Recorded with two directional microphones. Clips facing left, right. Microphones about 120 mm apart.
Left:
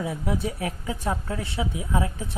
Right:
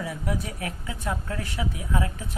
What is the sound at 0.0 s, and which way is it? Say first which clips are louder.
Speech: left 3 dB; 25° left (ahead or behind).